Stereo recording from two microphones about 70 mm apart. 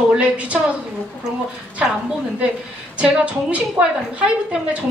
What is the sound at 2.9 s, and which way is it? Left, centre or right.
A woman's voice, centre.